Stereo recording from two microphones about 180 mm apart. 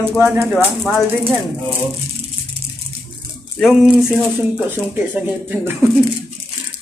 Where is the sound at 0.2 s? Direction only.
10° right (ahead or behind).